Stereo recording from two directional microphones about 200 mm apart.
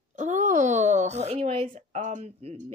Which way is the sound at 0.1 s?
40° right (ahead or behind).